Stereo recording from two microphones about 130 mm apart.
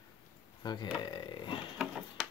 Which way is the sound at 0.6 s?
40° left (ahead or behind).